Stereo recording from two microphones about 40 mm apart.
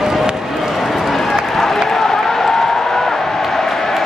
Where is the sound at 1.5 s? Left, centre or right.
Centre.